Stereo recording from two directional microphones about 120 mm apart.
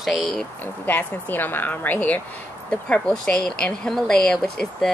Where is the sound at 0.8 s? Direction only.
15° left (ahead or behind).